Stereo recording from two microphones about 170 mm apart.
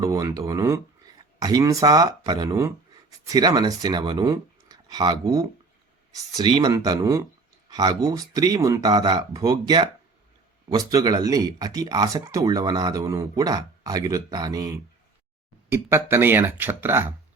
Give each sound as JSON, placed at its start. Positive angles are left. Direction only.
{"t": 0.0, "sound": "speech", "side_deg": -20}